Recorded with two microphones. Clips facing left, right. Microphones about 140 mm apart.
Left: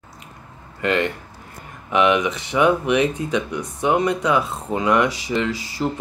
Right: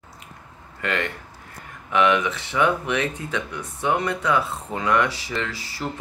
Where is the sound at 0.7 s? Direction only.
20° left (ahead or behind).